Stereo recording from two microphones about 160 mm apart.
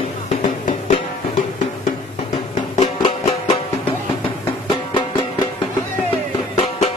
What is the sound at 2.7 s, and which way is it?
Music, 45° left (ahead or behind).